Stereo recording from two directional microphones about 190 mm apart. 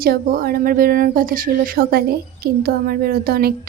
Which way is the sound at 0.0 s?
50° right (ahead or behind).